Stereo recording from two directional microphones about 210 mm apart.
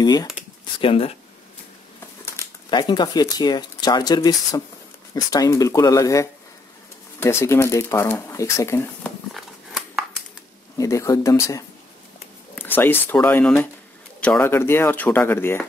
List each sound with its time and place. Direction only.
0.0 s speech: 20° left (ahead or behind)
2.2 s speech: 15° left (ahead or behind)
9.3 s a sound: centre (ahead or behind)
10.8 s speech: 15° left (ahead or behind)